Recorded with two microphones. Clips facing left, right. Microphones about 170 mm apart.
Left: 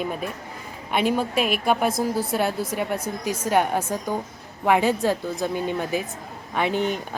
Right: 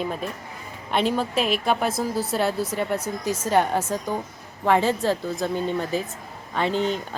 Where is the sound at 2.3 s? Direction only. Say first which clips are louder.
Even; 10° left (ahead or behind).